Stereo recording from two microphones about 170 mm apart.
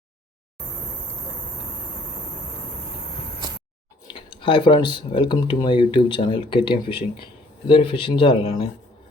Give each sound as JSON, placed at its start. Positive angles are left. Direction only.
{"t": 4.1, "sound": "speech", "side_deg": 30}